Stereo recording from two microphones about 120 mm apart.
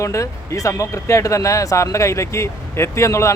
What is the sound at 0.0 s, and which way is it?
Speech, 25° left (ahead or behind).